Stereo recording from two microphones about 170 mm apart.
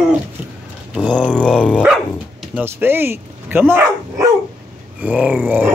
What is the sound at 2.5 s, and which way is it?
Speech, 15° right (ahead or behind).